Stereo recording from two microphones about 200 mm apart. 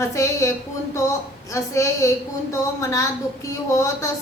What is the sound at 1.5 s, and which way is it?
A woman's voice, 15° left (ahead or behind).